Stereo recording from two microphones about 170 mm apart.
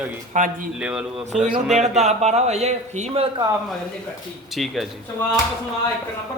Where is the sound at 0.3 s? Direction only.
50° right (ahead or behind).